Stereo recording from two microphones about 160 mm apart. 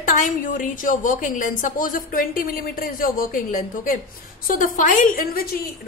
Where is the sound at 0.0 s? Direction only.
55° left (ahead or behind).